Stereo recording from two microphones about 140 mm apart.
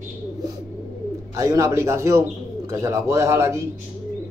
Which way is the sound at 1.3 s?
25° right (ahead or behind).